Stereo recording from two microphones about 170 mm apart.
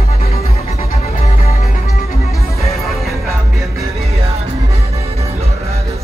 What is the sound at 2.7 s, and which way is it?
Music, centre (ahead or behind).